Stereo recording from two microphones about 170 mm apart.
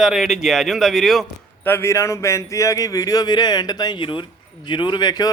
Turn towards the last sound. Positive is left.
turn(degrees=25)  # may be behind; listen again after turning